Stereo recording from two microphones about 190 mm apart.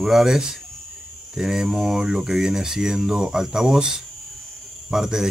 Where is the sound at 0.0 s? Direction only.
Centre (ahead or behind).